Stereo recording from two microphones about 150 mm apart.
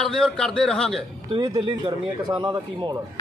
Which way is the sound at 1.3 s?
30° right (ahead or behind).